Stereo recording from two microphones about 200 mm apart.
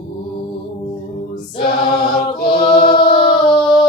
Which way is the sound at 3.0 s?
25° left (ahead or behind).